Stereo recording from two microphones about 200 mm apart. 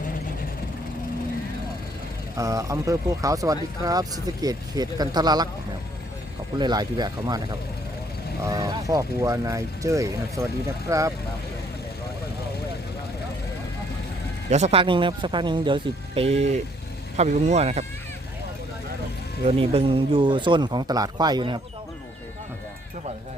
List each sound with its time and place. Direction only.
2.4 s speech: 15° right (ahead or behind)
6.6 s speech: 20° right (ahead or behind)
8.4 s speech: 20° right (ahead or behind)
14.5 s speech: 30° right (ahead or behind)
19.5 s speech: 25° right (ahead or behind)